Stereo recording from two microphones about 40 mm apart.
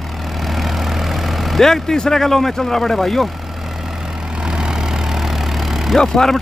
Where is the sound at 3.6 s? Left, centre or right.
Centre.